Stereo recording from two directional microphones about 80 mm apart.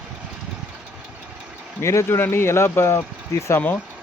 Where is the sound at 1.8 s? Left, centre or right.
Left.